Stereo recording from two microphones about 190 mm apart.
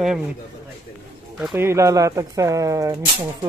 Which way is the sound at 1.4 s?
10° right (ahead or behind).